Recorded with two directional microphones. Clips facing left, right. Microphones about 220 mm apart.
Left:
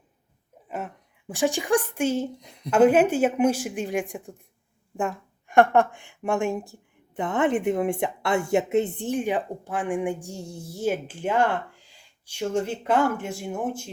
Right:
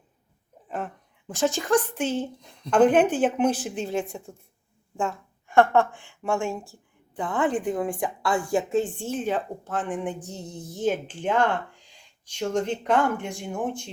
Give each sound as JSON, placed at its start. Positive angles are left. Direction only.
{"t": 1.3, "sound": "a woman's voice", "side_deg": 15}